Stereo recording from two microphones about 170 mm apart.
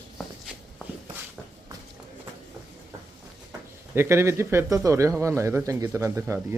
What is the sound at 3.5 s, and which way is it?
Speech, 15° right (ahead or behind).